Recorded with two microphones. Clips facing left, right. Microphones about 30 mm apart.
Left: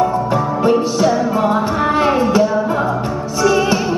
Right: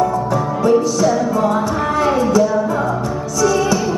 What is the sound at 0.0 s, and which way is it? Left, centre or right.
Music, left.